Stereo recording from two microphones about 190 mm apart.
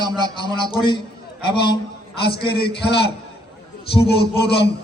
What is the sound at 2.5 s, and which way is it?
Speech, 60° left (ahead or behind).